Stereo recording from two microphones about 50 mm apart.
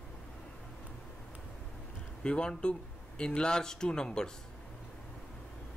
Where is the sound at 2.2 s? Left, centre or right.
Centre.